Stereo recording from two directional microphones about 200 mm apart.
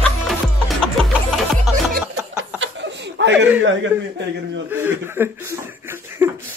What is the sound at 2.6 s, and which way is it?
Chuckle, 65° right (ahead or behind).